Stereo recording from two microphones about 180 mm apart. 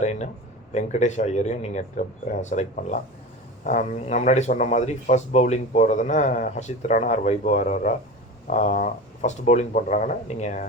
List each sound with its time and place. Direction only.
0.0 s speech: 40° left (ahead or behind)